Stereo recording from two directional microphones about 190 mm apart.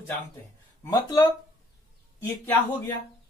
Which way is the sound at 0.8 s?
20° left (ahead or behind).